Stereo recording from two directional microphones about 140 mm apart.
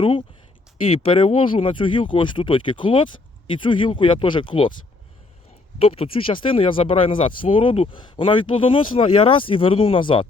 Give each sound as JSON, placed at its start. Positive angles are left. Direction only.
{"t": 0.0, "sound": "speech", "side_deg": 40}
{"t": 5.8, "sound": "speech", "side_deg": 40}